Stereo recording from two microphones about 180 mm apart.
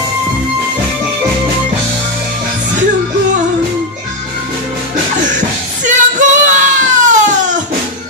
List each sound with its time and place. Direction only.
5.9 s child singing: 45° right (ahead or behind)